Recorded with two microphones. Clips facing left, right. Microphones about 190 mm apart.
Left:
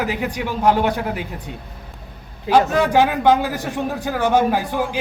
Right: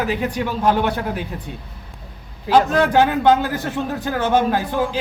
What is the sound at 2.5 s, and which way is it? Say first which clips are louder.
A woman's voice: even; 10° left (ahead or behind).